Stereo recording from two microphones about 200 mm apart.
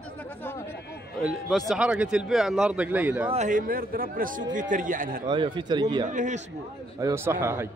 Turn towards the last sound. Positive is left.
turn(degrees=-10)  # may be behind; listen again after turning